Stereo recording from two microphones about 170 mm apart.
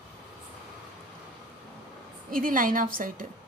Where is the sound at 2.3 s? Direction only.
55° right (ahead or behind).